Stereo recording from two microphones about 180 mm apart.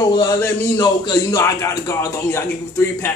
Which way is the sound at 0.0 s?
20° left (ahead or behind).